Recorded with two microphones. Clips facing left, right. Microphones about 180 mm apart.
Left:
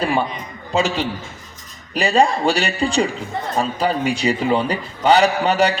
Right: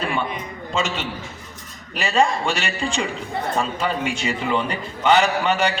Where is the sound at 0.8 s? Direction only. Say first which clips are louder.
Left 5 dB; 35° left (ahead or behind).